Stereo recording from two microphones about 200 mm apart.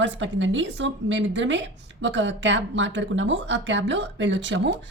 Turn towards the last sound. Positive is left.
turn(degrees=-65)  # may be behind; listen again after turning